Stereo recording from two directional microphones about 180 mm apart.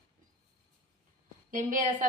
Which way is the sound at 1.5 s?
45° right (ahead or behind).